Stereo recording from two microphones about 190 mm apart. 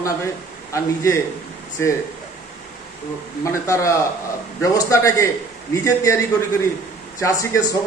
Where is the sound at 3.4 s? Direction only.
15° left (ahead or behind).